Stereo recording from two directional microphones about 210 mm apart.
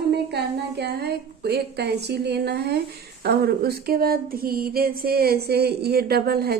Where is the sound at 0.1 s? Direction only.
50° right (ahead or behind).